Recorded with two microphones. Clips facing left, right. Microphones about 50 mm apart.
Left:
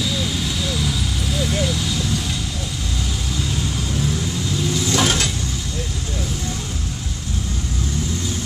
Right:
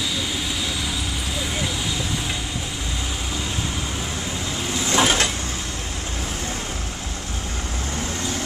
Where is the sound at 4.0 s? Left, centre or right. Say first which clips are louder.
Left 4 dB; right.